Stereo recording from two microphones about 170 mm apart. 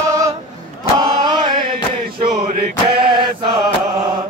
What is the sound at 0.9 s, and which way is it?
Chant, 25° right (ahead or behind).